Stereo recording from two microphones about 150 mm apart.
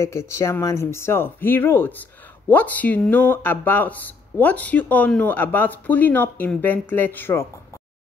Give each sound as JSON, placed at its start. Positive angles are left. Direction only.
{"t": 0.0, "sound": "speech", "side_deg": 20}